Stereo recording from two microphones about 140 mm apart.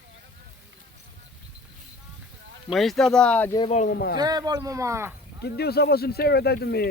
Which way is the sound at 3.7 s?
60° left (ahead or behind).